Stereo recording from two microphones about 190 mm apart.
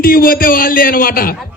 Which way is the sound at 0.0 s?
50° left (ahead or behind).